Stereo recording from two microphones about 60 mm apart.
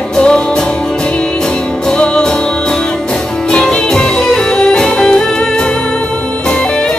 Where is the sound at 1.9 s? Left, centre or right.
Centre.